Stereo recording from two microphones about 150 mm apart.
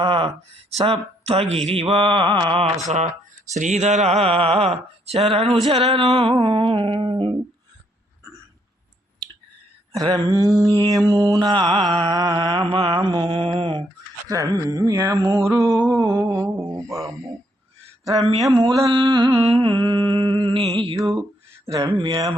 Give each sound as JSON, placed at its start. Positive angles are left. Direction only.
{"t": 0.0, "sound": "a sound", "side_deg": -35}
{"t": 0.8, "sound": "speech", "side_deg": -40}
{"t": 3.5, "sound": "speech", "side_deg": -50}
{"t": 8.2, "sound": "a sound", "side_deg": -20}
{"t": 9.9, "sound": "mantra", "side_deg": -25}
{"t": 14.3, "sound": "mantra", "side_deg": -25}
{"t": 18.2, "sound": "speech", "side_deg": -40}
{"t": 18.5, "sound": "mantra", "side_deg": -25}
{"t": 19.4, "sound": "speech", "side_deg": -40}
{"t": 21.8, "sound": "mantra", "side_deg": -30}